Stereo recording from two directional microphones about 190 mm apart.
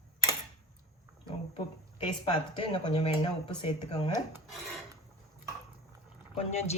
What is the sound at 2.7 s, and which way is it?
Speech, 30° left (ahead or behind).